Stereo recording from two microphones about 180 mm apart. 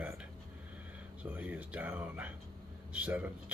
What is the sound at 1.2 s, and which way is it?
Speech, 10° right (ahead or behind).